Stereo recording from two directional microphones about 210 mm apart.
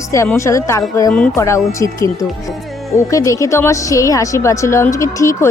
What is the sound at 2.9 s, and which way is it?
A woman's voice, 15° left (ahead or behind).